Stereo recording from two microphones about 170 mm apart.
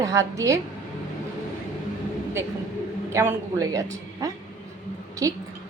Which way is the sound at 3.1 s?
15° right (ahead or behind).